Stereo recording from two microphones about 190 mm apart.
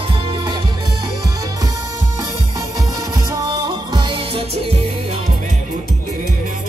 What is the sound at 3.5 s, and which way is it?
Music, 25° right (ahead or behind).